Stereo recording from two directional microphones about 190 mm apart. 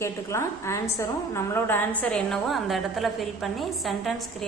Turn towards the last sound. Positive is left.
turn(degrees=0)  # may be behind; listen again after turning